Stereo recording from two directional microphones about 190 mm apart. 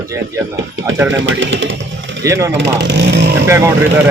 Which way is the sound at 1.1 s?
90° right.